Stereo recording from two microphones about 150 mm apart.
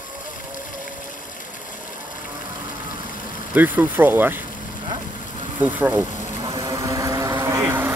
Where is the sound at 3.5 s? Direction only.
10° right (ahead or behind).